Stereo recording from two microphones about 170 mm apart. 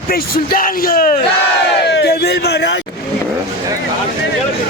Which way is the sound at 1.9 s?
80° left.